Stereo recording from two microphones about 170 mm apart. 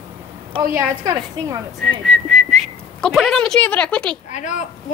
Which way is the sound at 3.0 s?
Centre (ahead or behind).